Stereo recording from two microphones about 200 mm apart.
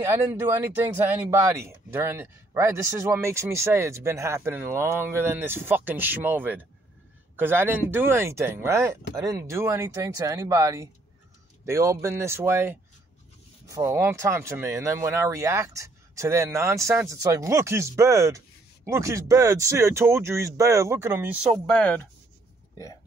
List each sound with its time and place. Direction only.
0.0 s speech: 10° right (ahead or behind); by 22.0 s 5° left (ahead or behind)